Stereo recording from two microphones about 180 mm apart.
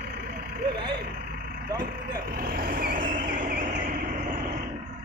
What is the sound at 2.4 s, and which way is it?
Vehicle, 55° right (ahead or behind).